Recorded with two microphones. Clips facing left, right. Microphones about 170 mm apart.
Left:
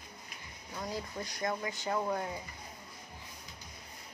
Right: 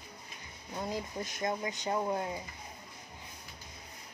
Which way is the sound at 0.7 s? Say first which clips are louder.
Right 2 dB; 20° right (ahead or behind).